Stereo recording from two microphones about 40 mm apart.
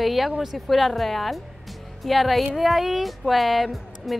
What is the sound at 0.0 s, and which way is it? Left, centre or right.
Speech, centre.